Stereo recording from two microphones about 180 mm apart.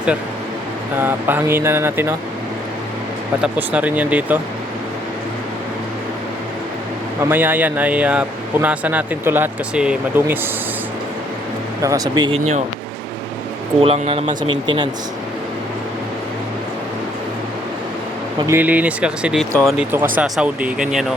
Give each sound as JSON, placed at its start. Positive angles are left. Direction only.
{"t": 0.9, "sound": "speech", "side_deg": -10}
{"t": 3.4, "sound": "speech", "side_deg": -10}
{"t": 7.2, "sound": "speech", "side_deg": -10}
{"t": 11.8, "sound": "speech", "side_deg": -20}
{"t": 13.8, "sound": "speech", "side_deg": -35}
{"t": 18.4, "sound": "speech", "side_deg": -10}